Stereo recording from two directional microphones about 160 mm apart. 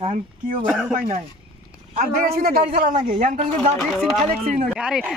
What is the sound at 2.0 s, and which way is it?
A man's voice, 70° right (ahead or behind).